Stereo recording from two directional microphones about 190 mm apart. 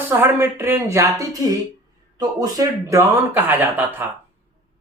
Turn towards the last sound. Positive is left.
turn(degrees=-10)  # may be behind; listen again after turning